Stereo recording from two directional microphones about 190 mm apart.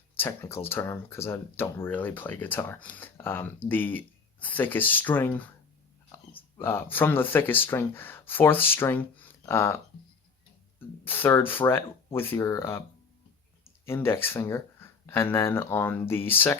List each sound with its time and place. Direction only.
0.2 s speech: 15° left (ahead or behind)
6.6 s speech: 10° left (ahead or behind)
13.8 s speech: 15° left (ahead or behind)